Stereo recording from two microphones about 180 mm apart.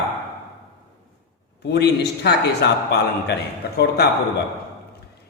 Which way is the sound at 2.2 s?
65° left (ahead or behind).